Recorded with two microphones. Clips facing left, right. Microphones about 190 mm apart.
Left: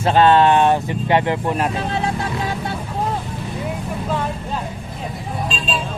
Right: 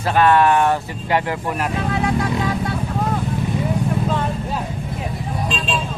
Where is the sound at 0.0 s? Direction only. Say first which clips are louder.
Left 2 dB; 25° left (ahead or behind).